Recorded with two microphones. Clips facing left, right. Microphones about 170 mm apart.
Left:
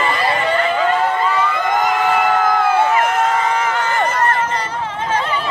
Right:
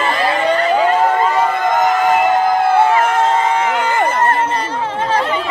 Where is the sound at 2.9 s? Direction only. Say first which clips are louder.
Right 2 dB; 25° right (ahead or behind).